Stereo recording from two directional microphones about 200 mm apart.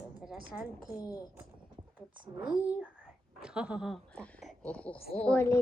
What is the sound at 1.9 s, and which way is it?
A woman's voice, 5° right (ahead or behind).